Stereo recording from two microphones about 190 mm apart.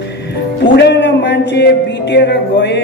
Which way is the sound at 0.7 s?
65° left (ahead or behind).